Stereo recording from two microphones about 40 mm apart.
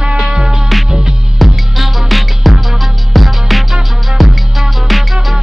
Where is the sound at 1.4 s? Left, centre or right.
Centre.